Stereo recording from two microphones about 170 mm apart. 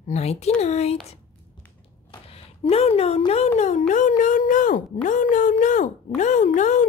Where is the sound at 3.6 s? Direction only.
45° left (ahead or behind).